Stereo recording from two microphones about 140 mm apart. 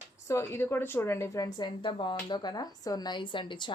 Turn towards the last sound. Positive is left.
turn(degrees=35)  # may be behind; listen again after turning